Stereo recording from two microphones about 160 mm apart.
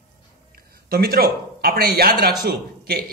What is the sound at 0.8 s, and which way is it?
A man's voice, 65° right (ahead or behind).